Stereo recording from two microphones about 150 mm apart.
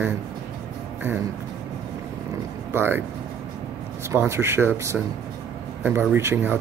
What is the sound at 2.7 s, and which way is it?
Speech, 15° right (ahead or behind).